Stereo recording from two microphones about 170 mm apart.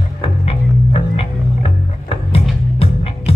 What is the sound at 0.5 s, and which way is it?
Music, 35° left (ahead or behind).